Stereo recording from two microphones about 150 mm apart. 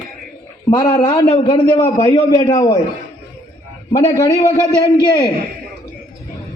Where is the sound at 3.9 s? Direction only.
20° left (ahead or behind).